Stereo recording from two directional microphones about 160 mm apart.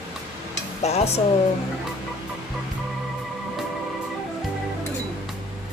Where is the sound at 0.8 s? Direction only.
40° left (ahead or behind).